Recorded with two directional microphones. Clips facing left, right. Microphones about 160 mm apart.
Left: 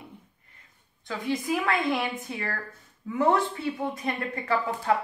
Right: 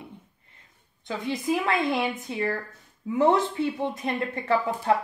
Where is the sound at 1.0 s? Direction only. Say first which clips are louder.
Right 1 dB; 20° right (ahead or behind).